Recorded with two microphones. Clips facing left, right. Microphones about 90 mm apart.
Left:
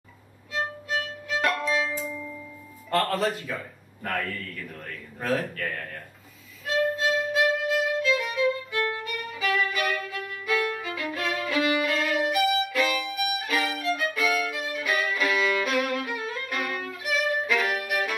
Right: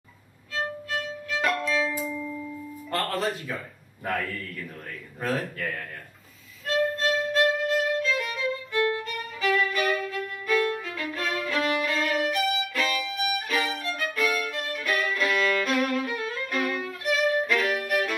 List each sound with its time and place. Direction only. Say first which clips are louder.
0.5 s violin: left 1 dB; 15° left (ahead or behind)
1.4 s music: even; centre (ahead or behind)
2.9 s a man's voice: left 3 dB; centre (ahead or behind)
5.2 s speech: left 1 dB; centre (ahead or behind)
6.6 s violin: even; centre (ahead or behind)